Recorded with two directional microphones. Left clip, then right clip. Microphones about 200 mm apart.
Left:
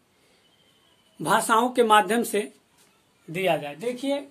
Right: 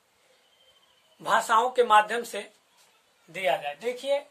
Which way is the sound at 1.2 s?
25° left (ahead or behind).